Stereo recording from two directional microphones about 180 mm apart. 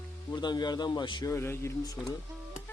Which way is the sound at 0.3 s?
25° left (ahead or behind).